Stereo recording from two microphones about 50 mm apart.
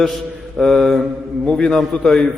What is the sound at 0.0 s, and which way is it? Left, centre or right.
Mantra, centre.